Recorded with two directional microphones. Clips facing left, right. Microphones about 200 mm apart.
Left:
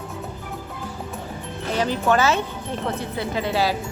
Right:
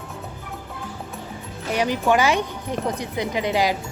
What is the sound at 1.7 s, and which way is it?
Speech, 15° right (ahead or behind).